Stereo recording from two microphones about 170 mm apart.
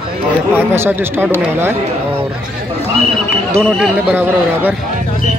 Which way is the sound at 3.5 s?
5° left (ahead or behind).